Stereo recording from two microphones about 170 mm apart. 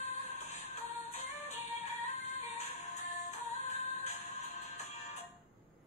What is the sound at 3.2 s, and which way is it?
Music, 45° left (ahead or behind).